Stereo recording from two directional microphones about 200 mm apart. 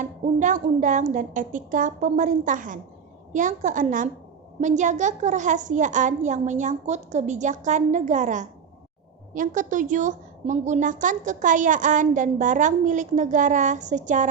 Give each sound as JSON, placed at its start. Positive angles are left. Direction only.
{"t": 0.0, "sound": "a woman's voice", "side_deg": -40}